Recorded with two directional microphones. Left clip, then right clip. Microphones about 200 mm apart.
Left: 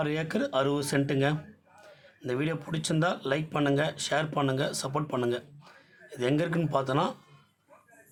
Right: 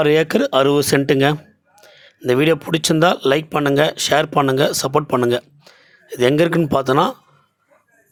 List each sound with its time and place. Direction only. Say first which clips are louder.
0.0 s speech: right 15 dB; 40° right (ahead or behind)